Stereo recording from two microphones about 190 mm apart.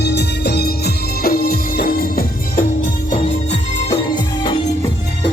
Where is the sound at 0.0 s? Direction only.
60° left (ahead or behind).